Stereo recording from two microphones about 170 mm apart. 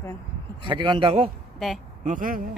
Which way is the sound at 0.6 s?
30° right (ahead or behind).